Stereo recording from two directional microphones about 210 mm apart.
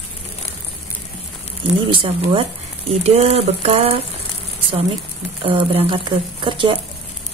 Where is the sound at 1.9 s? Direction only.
25° right (ahead or behind).